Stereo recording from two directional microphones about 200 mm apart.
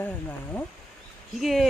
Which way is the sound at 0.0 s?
10° left (ahead or behind).